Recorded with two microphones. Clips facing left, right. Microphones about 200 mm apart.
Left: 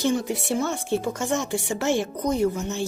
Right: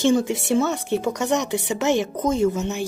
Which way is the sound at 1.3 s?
20° right (ahead or behind).